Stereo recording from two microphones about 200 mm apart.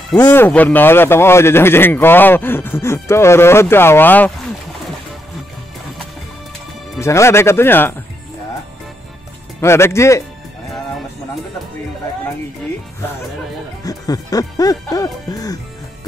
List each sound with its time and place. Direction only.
0.1 s speech: 10° left (ahead or behind)
7.0 s speech: 15° left (ahead or behind)
9.6 s speech: 15° left (ahead or behind)
13.8 s speech: 20° left (ahead or behind)